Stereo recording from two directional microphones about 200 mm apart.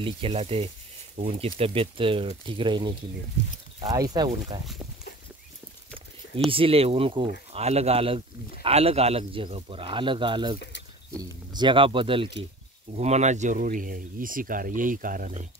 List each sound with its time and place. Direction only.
0.0 s speech: 30° right (ahead or behind)
6.5 s speech: 30° right (ahead or behind); by 15.4 s 45° right (ahead or behind)